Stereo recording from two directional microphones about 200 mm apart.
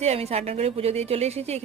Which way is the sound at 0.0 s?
30° right (ahead or behind).